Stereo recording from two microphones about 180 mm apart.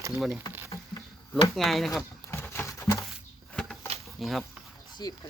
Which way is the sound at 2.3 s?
15° left (ahead or behind).